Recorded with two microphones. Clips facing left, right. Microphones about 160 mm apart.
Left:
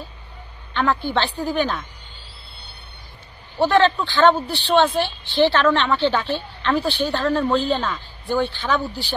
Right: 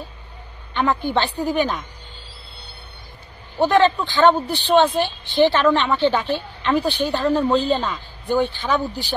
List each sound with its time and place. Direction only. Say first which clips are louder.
0.7 s speech: right 1 dB; 15° right (ahead or behind)
3.5 s speech: right 1 dB; 10° right (ahead or behind)